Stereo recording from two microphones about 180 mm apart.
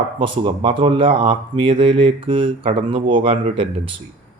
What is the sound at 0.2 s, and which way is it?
A man's voice, 30° right (ahead or behind).